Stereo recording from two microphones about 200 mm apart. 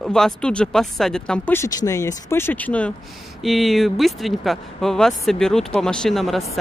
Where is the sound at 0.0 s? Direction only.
Centre (ahead or behind).